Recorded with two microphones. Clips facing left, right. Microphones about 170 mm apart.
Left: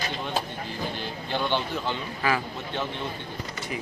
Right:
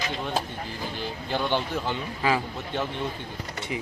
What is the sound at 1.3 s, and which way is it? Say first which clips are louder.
Speech: right 1 dB; 10° right (ahead or behind).